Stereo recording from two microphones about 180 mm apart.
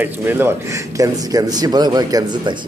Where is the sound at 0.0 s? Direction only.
10° right (ahead or behind).